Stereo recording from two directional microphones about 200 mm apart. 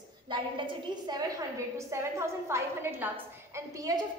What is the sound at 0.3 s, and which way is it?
A woman's voice, 20° right (ahead or behind).